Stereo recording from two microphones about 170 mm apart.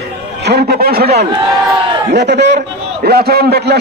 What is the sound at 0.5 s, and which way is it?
Speech, 70° right (ahead or behind).